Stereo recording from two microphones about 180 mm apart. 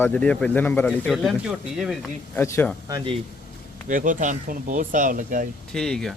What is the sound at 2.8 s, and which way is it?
Speech, 25° right (ahead or behind).